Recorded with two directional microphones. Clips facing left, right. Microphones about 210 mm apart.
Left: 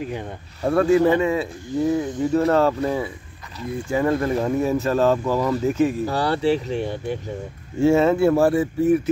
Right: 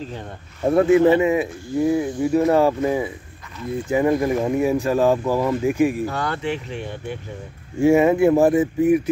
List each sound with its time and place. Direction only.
0.0 s speech: 15° left (ahead or behind)
0.7 s speech: 20° right (ahead or behind)
6.1 s speech: 35° left (ahead or behind)
7.8 s speech: 15° right (ahead or behind)